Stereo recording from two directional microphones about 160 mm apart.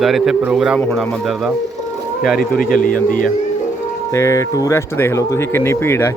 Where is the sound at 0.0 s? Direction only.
Centre (ahead or behind).